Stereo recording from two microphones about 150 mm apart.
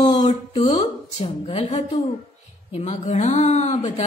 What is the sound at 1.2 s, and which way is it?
Speech, 45° left (ahead or behind).